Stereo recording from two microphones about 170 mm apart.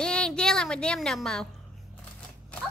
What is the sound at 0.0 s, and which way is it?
A woman's voice, 5° left (ahead or behind).